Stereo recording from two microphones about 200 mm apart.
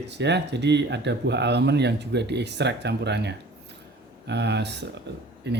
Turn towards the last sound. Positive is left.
turn(degrees=-60)  # may be behind; listen again after turning